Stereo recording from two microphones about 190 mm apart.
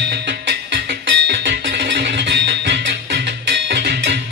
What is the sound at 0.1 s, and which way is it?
Music, 60° right (ahead or behind).